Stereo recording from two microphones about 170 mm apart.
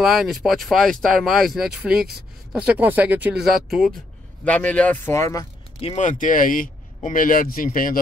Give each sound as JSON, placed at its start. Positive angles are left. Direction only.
{"t": 0.0, "sound": "a man's voice", "side_deg": 0}
{"t": 5.8, "sound": "speech", "side_deg": 40}